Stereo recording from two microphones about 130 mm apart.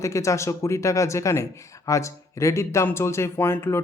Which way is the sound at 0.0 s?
25° left (ahead or behind).